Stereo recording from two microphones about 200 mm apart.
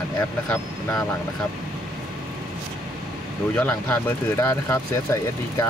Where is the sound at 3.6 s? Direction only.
10° left (ahead or behind).